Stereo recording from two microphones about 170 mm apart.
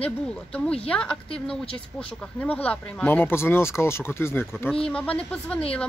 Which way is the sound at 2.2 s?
5° left (ahead or behind).